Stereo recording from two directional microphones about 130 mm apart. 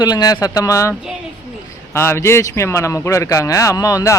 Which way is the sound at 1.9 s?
20° left (ahead or behind).